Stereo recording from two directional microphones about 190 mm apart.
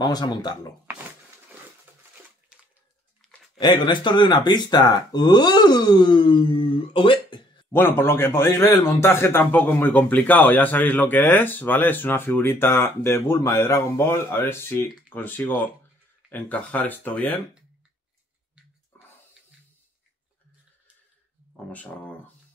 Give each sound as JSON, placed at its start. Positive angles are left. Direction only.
{"t": 0.0, "sound": "speech", "side_deg": 20}
{"t": 2.5, "sound": "bathtub", "side_deg": -5}
{"t": 3.5, "sound": "speech", "side_deg": 25}
{"t": 7.7, "sound": "a man's voice", "side_deg": 10}